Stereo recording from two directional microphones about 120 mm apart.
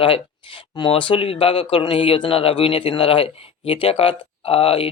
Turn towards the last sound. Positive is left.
turn(degrees=55)  # may be behind; listen again after turning